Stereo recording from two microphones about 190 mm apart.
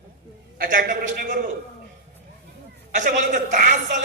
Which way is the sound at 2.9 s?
40° right (ahead or behind).